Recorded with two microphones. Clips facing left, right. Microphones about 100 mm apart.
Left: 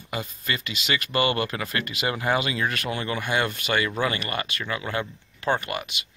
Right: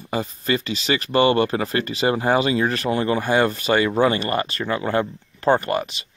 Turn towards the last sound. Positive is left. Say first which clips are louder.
# right 7 dB
turn(degrees=-35)  # may be behind; listen again after turning